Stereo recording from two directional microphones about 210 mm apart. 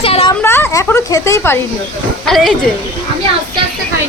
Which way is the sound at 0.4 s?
10° left (ahead or behind).